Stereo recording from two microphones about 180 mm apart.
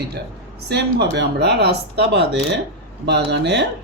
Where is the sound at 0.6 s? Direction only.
65° right (ahead or behind).